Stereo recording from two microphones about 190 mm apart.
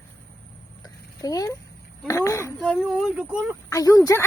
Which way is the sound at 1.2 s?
20° left (ahead or behind).